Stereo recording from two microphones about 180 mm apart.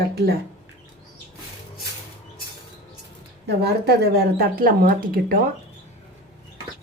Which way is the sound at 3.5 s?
65° right (ahead or behind).